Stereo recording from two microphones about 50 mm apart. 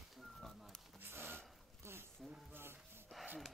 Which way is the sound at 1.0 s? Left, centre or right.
Right.